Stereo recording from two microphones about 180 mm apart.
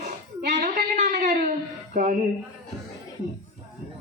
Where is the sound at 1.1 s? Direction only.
60° right (ahead or behind).